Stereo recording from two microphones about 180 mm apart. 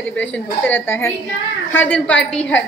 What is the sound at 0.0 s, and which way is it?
A woman's voice, 5° left (ahead or behind).